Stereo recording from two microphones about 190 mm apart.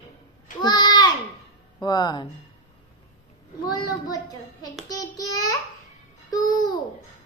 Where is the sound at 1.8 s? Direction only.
20° left (ahead or behind).